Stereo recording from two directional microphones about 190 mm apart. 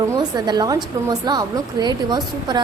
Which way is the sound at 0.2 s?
20° right (ahead or behind).